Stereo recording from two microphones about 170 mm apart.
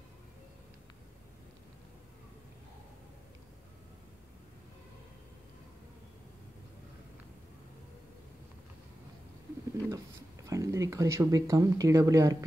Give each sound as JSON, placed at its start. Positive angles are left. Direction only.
{"t": 9.8, "sound": "speech", "side_deg": -20}